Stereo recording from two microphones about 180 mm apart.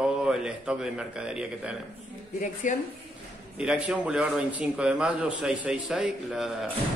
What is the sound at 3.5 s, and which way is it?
Speech, 5° right (ahead or behind).